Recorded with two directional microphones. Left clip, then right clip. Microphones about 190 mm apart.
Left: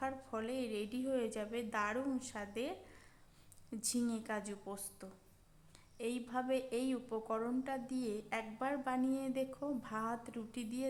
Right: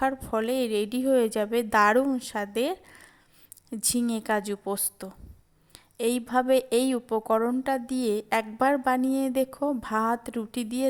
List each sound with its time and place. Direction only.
0.0 s a woman's voice: 40° right (ahead or behind)